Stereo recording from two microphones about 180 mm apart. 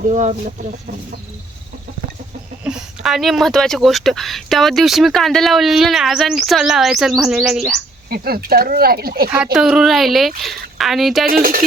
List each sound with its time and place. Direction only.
0.1 s speech: 40° right (ahead or behind)
2.6 s speech: 5° right (ahead or behind)
8.1 s speech: 55° right (ahead or behind)
9.3 s speech: 5° right (ahead or behind)
11.3 s speech: 50° right (ahead or behind)